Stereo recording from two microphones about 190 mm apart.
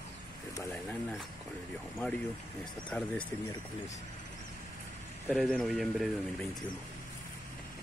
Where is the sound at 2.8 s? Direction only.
5° left (ahead or behind).